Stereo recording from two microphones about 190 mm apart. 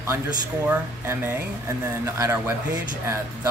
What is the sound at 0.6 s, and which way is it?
Speech, 10° right (ahead or behind).